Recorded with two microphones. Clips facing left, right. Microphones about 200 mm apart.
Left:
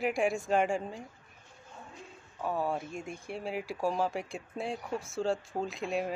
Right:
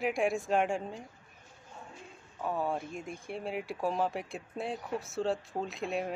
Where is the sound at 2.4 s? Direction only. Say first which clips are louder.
Left 1 dB; centre (ahead or behind).